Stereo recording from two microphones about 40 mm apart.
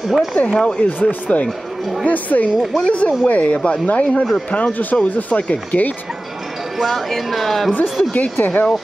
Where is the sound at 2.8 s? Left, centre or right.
Left.